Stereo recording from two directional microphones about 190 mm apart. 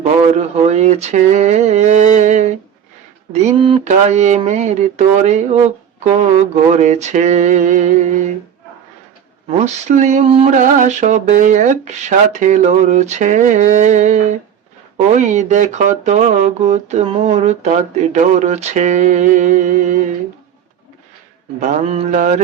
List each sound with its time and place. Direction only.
0.0 s speech: 35° right (ahead or behind)
9.5 s speech: 35° right (ahead or behind)
21.6 s speech: 35° right (ahead or behind)